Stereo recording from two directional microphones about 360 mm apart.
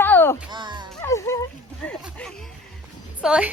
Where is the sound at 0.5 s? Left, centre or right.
Centre.